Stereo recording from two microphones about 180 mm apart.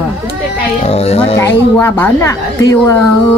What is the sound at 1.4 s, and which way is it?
A woman's voice, 15° left (ahead or behind).